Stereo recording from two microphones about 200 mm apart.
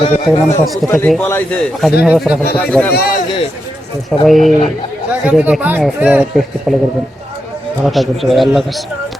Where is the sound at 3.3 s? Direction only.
25° left (ahead or behind).